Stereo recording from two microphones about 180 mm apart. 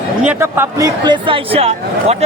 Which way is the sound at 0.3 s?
10° right (ahead or behind).